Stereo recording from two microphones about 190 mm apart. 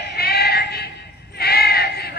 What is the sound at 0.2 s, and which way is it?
Music, 55° left (ahead or behind).